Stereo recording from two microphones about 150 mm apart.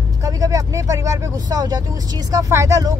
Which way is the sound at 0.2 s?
25° right (ahead or behind).